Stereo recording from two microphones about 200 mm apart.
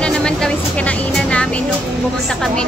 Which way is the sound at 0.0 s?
5° left (ahead or behind).